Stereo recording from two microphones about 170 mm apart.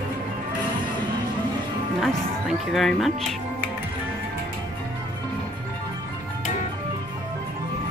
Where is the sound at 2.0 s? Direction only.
Centre (ahead or behind).